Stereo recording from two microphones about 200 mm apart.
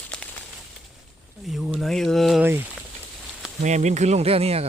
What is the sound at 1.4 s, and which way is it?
Speech, centre (ahead or behind).